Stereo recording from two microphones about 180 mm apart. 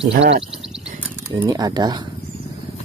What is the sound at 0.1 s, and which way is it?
Speech, 75° right (ahead or behind).